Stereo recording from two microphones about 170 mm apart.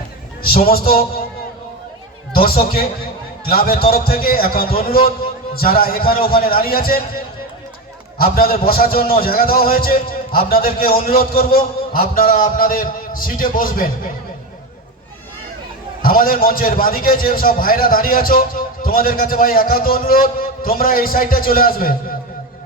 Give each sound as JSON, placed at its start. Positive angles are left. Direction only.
{"t": 0.4, "sound": "a man's voice", "side_deg": 60}
{"t": 3.4, "sound": "a man's voice", "side_deg": 60}
{"t": 8.2, "sound": "a man's voice", "side_deg": 60}
{"t": 16.0, "sound": "a man's voice", "side_deg": 55}